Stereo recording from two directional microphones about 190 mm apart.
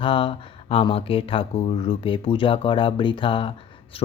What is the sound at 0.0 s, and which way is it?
Speech, 25° left (ahead or behind).